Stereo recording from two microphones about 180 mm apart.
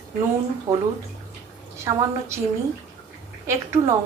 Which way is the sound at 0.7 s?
15° right (ahead or behind).